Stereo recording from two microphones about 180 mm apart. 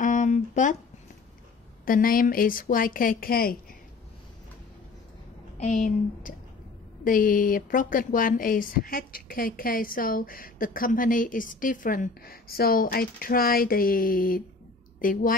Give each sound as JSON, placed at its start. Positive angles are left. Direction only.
{"t": 0.0, "sound": "a sound", "side_deg": 45}
{"t": 1.9, "sound": "speech", "side_deg": 50}
{"t": 5.6, "sound": "speech", "side_deg": 40}